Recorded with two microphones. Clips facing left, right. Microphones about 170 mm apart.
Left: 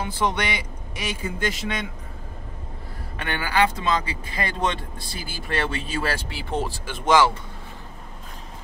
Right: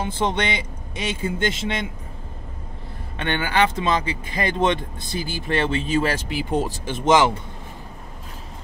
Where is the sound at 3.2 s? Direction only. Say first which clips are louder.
Right 2 dB; 25° right (ahead or behind).